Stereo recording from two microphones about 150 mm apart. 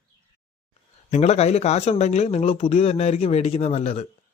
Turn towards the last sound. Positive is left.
turn(degrees=45)  # may be behind; listen again after turning